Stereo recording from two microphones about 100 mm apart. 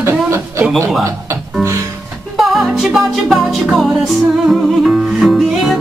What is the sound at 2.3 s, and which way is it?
Music, centre (ahead or behind).